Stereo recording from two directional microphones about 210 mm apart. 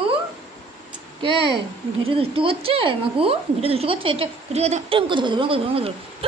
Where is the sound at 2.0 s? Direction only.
25° right (ahead or behind).